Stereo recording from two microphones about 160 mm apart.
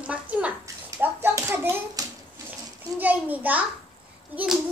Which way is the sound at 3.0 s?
10° right (ahead or behind).